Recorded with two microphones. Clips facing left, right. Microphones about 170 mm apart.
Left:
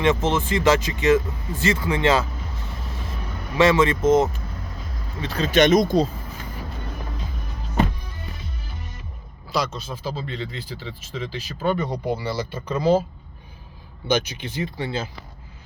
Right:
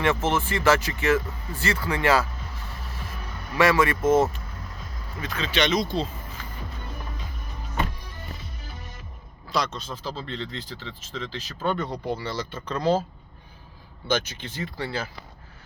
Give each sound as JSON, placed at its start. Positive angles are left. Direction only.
{"t": 0.0, "sound": "speech", "side_deg": 20}
{"t": 3.6, "sound": "speech", "side_deg": 20}
{"t": 5.2, "sound": "speech", "side_deg": 35}
{"t": 9.5, "sound": "speech", "side_deg": 5}
{"t": 14.1, "sound": "speech", "side_deg": 15}